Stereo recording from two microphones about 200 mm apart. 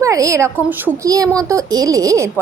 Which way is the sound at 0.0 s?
15° right (ahead or behind).